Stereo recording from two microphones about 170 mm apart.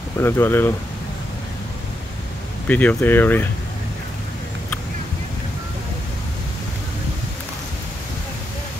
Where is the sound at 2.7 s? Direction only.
10° left (ahead or behind).